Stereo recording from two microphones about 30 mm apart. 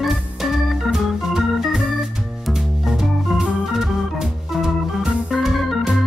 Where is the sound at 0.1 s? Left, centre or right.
Centre.